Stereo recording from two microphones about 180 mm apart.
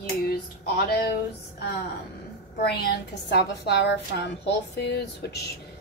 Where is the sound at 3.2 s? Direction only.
65° left (ahead or behind).